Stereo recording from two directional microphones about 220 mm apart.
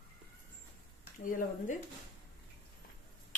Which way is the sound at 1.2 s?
35° left (ahead or behind).